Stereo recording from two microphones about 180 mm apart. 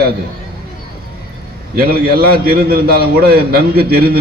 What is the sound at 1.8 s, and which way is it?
A man's voice, 60° right (ahead or behind).